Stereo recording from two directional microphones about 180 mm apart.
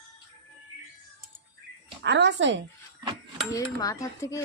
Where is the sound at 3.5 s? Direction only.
20° left (ahead or behind).